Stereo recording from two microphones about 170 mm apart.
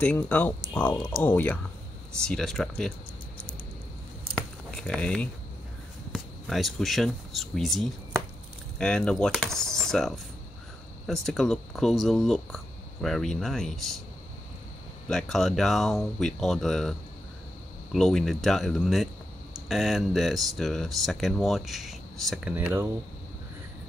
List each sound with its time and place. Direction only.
0.0 s speech: 10° left (ahead or behind)
4.4 s a sound: 5° left (ahead or behind)
6.1 s speech: centre (ahead or behind)
15.0 s speech: centre (ahead or behind)
17.9 s speech: centre (ahead or behind)